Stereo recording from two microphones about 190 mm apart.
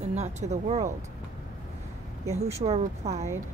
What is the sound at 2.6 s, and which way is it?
Speech, 35° right (ahead or behind).